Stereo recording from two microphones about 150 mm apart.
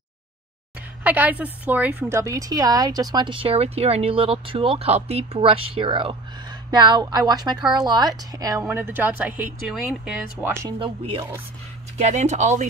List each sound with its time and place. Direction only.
1.0 s a woman's voice: 10° right (ahead or behind)
10.8 s a woman's voice: 35° right (ahead or behind)
12.0 s speech: 50° right (ahead or behind)